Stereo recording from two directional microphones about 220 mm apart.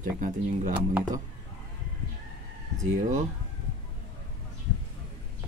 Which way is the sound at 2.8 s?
35° right (ahead or behind).